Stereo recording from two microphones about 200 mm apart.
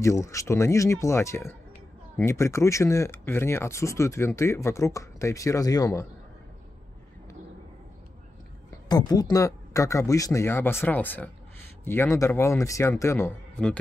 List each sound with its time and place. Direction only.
0.0 s speech: 15° left (ahead or behind)
8.8 s speech: 20° left (ahead or behind)